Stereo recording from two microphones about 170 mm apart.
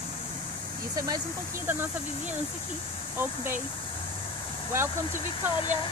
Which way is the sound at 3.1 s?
15° right (ahead or behind).